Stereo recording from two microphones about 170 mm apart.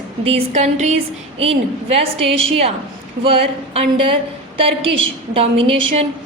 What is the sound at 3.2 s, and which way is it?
Speech, 35° right (ahead or behind).